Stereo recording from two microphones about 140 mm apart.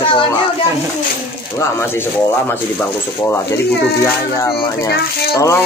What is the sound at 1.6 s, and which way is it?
Speech, 15° left (ahead or behind).